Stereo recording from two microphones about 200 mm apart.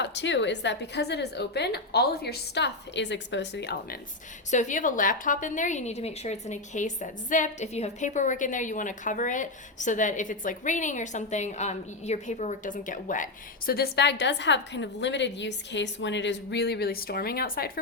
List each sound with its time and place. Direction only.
0.0 s a woman's voice: 60° left (ahead or behind)
4.5 s a woman's voice: 40° left (ahead or behind)